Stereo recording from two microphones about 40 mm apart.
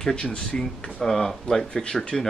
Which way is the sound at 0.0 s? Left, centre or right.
Left.